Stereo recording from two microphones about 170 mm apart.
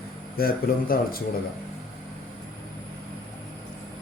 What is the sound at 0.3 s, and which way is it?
Speech, 60° left (ahead or behind).